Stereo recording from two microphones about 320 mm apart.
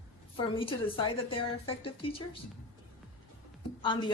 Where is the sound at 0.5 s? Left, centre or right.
Centre.